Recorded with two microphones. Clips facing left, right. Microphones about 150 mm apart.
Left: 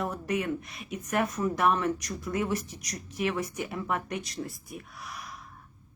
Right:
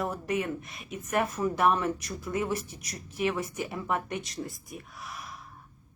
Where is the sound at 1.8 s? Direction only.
30° right (ahead or behind).